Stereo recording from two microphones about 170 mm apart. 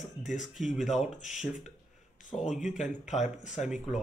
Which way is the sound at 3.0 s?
45° left (ahead or behind).